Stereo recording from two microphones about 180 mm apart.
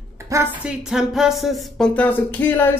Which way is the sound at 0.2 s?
15° right (ahead or behind).